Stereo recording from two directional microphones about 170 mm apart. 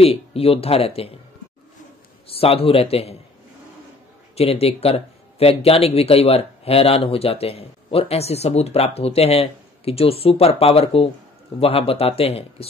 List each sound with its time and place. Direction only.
0.0 s speech: 35° left (ahead or behind)
2.3 s speech: 35° left (ahead or behind)
4.4 s speech: 35° left (ahead or behind)